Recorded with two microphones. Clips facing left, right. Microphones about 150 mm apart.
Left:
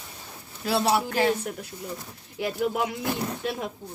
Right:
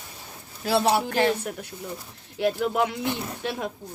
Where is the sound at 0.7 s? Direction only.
60° right (ahead or behind).